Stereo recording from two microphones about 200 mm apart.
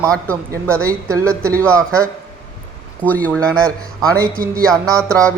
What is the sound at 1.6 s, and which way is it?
A woman's voice, 5° left (ahead or behind).